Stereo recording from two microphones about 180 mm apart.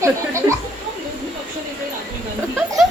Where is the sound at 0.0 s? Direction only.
15° right (ahead or behind).